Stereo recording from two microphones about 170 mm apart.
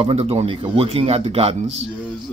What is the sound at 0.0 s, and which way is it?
A man's voice, 35° right (ahead or behind).